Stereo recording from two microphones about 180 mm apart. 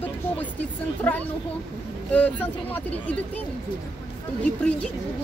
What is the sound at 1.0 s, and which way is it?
Speech, 10° left (ahead or behind).